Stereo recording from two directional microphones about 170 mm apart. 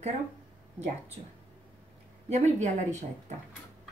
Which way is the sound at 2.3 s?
45° right (ahead or behind).